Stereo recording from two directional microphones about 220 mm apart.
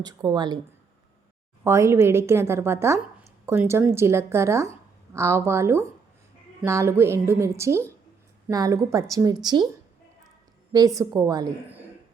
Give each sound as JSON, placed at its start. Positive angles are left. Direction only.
{"t": 0.0, "sound": "speech", "side_deg": -20}
{"t": 1.6, "sound": "a woman's voice", "side_deg": -10}
{"t": 10.7, "sound": "a woman's voice", "side_deg": -15}